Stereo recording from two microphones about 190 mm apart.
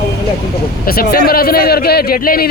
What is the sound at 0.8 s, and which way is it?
Speech, 50° left (ahead or behind).